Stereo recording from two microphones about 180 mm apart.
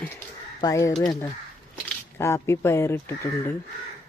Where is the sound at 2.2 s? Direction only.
15° left (ahead or behind).